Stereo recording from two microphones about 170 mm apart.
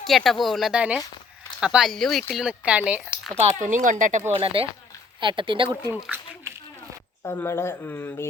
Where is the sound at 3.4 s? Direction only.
45° right (ahead or behind).